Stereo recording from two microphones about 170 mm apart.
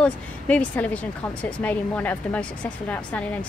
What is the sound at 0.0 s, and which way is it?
A woman's voice, 5° left (ahead or behind).